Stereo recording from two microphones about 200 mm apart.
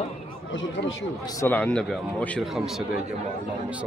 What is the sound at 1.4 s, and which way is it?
A man's voice, 5° left (ahead or behind).